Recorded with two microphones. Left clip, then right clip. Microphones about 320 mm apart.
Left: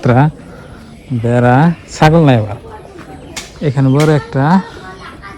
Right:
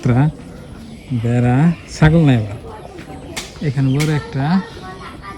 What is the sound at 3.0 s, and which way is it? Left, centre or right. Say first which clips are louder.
Bird: left 1 dB; centre.